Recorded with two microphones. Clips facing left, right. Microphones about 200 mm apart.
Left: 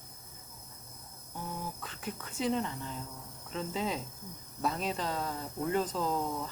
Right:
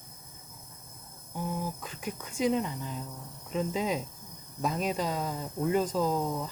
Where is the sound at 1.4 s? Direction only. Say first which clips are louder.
Right 6 dB; 15° right (ahead or behind).